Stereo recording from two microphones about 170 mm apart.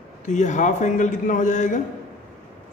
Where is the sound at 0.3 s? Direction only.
45° left (ahead or behind).